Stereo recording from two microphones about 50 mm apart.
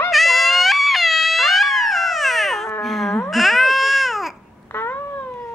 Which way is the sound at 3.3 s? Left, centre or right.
Centre.